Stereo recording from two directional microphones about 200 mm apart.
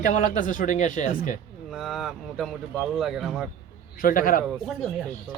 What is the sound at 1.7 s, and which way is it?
Speech, centre (ahead or behind).